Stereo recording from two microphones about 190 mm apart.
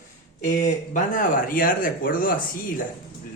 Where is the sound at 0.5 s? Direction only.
40° left (ahead or behind).